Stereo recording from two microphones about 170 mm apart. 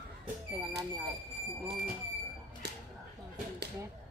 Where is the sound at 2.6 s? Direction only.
75° right (ahead or behind).